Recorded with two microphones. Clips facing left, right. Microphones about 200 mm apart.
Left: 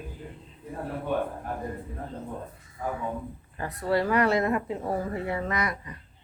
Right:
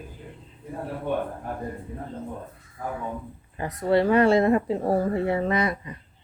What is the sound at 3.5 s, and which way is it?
A woman's voice, 20° right (ahead or behind).